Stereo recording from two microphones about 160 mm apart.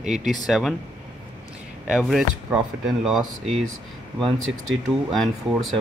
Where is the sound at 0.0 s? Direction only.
50° right (ahead or behind).